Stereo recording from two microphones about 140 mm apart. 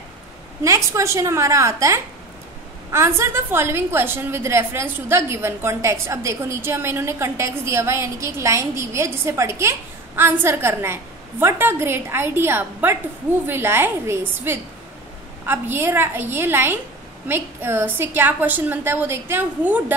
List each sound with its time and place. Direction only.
0.7 s a woman's voice: 20° right (ahead or behind)